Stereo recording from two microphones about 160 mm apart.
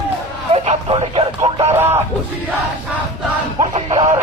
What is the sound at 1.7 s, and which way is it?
Speech, 15° right (ahead or behind).